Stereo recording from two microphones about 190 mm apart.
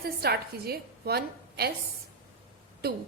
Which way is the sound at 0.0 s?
55° right (ahead or behind).